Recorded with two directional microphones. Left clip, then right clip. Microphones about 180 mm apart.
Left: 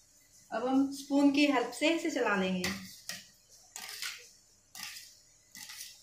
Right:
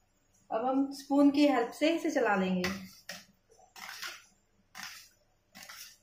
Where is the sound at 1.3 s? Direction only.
35° right (ahead or behind).